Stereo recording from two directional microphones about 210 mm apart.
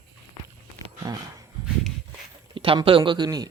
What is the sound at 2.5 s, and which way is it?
Speech, 25° right (ahead or behind).